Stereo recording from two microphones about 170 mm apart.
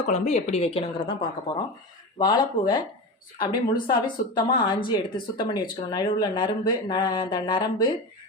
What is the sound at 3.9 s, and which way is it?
Speech, 25° left (ahead or behind).